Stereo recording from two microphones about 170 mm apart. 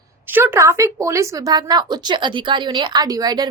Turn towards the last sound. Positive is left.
turn(degrees=-20)  # may be behind; listen again after turning